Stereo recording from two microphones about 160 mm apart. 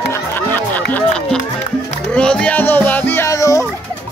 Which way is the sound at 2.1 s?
5° left (ahead or behind).